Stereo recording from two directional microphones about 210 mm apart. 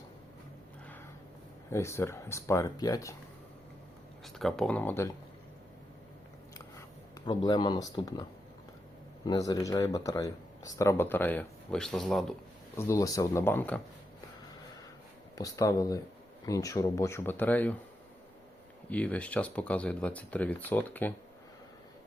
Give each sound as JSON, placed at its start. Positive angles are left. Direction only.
{"t": 1.7, "sound": "speech", "side_deg": 15}
{"t": 4.4, "sound": "speech", "side_deg": 0}
{"t": 7.3, "sound": "speech", "side_deg": 20}
{"t": 12.7, "sound": "speech", "side_deg": 15}
{"t": 15.4, "sound": "speech", "side_deg": 15}
{"t": 18.9, "sound": "speech", "side_deg": 5}